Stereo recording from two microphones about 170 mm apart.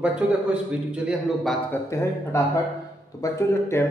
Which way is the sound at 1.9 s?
15° left (ahead or behind).